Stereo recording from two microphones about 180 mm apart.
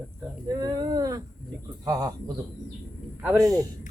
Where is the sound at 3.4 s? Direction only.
20° right (ahead or behind).